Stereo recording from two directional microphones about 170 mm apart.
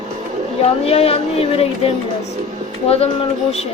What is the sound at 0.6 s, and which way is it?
A woman's voice, 35° left (ahead or behind).